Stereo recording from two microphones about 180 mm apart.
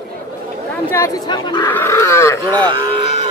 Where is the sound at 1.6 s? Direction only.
15° left (ahead or behind).